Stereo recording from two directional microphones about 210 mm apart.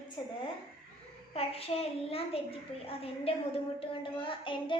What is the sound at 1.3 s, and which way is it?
A child's voice, 30° left (ahead or behind).